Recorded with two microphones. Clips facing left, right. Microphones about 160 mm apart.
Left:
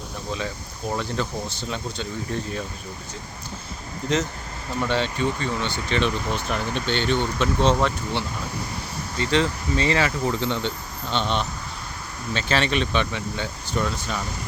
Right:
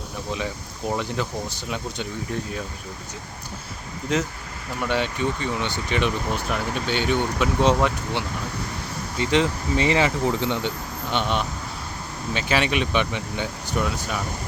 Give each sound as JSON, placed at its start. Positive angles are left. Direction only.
{"t": 0.3, "sound": "speech", "side_deg": -15}
{"t": 4.8, "sound": "speech", "side_deg": -10}